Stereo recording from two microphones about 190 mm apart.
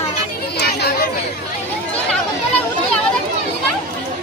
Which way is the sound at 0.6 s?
55° left (ahead or behind).